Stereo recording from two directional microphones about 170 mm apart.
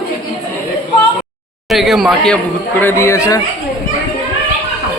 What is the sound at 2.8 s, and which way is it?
Speech, 15° left (ahead or behind).